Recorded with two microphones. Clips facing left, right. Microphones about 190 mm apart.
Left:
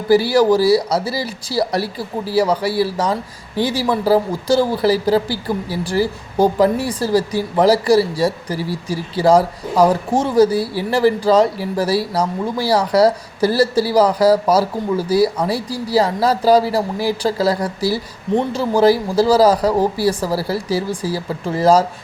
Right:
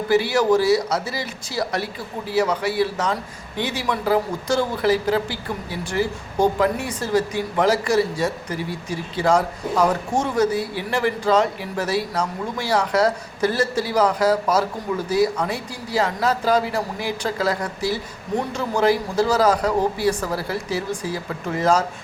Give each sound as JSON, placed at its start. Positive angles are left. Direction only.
{"t": 0.1, "sound": "speech", "side_deg": 35}